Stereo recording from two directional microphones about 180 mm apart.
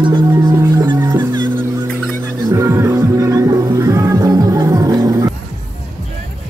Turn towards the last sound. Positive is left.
turn(degrees=-20)  # may be behind; listen again after turning